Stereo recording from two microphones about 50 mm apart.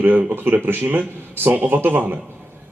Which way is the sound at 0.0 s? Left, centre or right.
Right.